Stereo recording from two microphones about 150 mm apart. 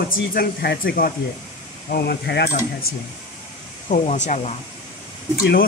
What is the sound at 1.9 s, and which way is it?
Speech, 90° left.